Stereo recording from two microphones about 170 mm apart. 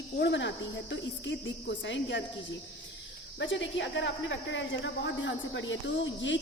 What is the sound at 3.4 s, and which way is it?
Speech, 90° left.